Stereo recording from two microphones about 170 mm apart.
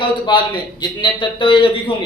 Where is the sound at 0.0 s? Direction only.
30° left (ahead or behind).